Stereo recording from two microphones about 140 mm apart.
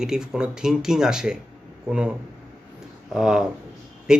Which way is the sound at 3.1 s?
5° right (ahead or behind).